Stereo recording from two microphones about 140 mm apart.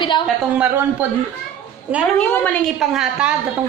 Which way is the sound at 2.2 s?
10° left (ahead or behind).